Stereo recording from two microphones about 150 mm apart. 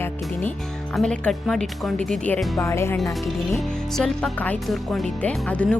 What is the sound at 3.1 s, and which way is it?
Speech, centre (ahead or behind).